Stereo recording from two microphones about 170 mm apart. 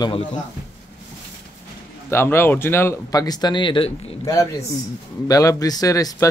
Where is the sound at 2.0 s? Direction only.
15° left (ahead or behind).